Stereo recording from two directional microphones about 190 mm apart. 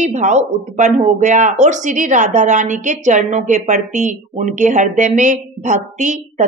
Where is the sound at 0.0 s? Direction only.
40° right (ahead or behind).